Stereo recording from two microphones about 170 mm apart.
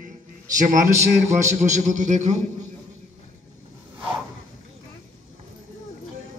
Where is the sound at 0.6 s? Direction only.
50° right (ahead or behind).